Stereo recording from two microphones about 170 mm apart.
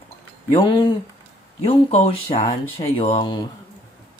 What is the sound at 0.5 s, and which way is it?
Speech, 30° left (ahead or behind).